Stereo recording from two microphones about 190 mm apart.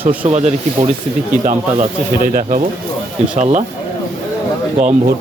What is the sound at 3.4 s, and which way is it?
Speech, 40° right (ahead or behind).